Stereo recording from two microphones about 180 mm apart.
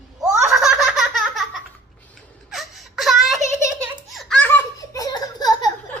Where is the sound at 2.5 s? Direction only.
Centre (ahead or behind).